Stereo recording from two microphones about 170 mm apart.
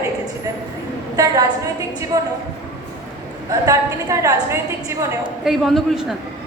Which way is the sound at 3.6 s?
20° right (ahead or behind).